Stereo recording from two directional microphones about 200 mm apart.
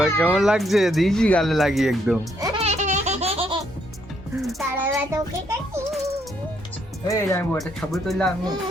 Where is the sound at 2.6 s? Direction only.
35° right (ahead or behind).